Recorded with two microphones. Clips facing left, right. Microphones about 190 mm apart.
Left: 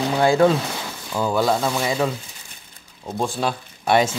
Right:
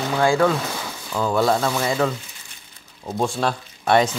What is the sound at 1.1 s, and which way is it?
Speech, 5° left (ahead or behind).